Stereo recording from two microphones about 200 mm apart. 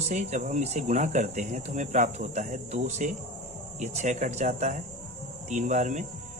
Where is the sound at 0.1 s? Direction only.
35° right (ahead or behind).